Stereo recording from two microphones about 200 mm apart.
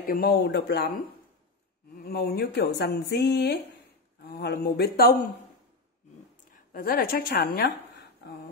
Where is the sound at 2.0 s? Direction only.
50° left (ahead or behind).